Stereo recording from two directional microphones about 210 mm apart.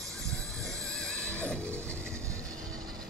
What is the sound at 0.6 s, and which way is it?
Music, 15° right (ahead or behind).